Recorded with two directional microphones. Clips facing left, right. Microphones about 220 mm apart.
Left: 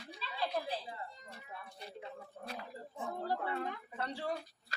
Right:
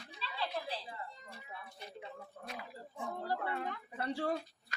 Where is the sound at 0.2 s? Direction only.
45° left (ahead or behind).